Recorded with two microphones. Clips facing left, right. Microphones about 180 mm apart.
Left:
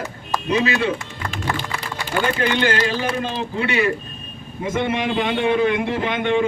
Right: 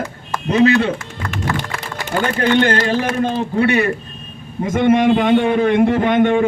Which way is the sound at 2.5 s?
45° right (ahead or behind).